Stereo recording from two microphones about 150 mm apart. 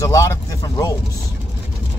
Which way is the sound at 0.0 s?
20° left (ahead or behind).